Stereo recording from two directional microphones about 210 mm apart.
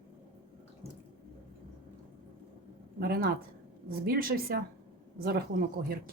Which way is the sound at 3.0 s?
45° right (ahead or behind).